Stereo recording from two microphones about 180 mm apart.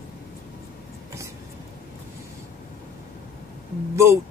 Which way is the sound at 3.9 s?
15° right (ahead or behind).